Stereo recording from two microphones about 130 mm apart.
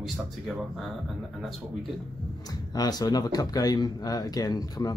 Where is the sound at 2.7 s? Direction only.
30° left (ahead or behind).